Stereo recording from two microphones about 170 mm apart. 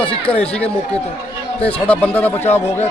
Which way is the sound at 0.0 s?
5° left (ahead or behind).